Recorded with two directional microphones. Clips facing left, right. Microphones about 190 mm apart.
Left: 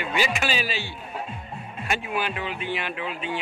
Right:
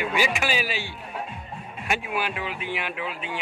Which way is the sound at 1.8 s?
10° right (ahead or behind).